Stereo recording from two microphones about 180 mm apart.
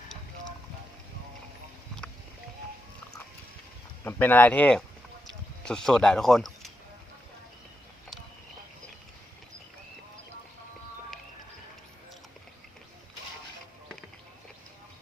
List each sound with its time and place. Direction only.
4.0 s speech: 10° left (ahead or behind)